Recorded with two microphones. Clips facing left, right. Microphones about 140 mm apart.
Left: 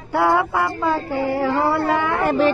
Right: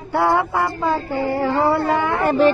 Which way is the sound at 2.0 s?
Centre (ahead or behind).